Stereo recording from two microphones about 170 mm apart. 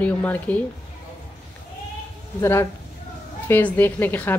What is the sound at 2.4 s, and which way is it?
Speech, 15° left (ahead or behind).